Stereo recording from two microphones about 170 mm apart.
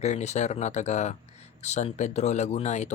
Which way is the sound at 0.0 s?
40° left (ahead or behind).